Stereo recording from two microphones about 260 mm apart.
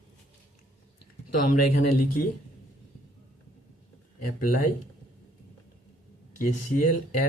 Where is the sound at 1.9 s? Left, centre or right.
Left.